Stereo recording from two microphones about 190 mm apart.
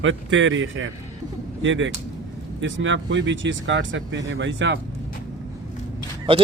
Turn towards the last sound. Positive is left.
turn(degrees=-30)  # may be behind; listen again after turning